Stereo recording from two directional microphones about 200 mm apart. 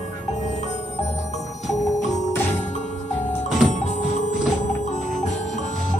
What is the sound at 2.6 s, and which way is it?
Music, 35° left (ahead or behind).